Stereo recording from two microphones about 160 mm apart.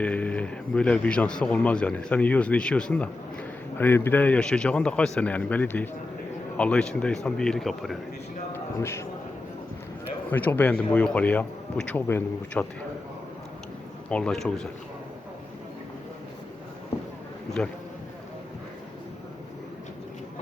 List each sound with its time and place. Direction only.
0.0 s speech: 10° left (ahead or behind)
8.5 s speech: 15° left (ahead or behind)
10.3 s speech: 10° left (ahead or behind)
14.1 s speech: 5° left (ahead or behind)